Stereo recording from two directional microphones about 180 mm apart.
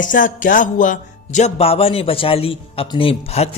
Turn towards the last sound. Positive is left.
turn(degrees=35)  # may be behind; listen again after turning